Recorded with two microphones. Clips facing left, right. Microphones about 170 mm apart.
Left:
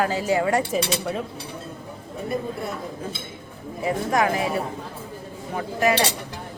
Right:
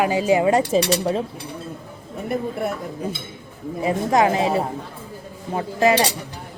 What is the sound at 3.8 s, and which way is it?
A woman's voice, 25° right (ahead or behind).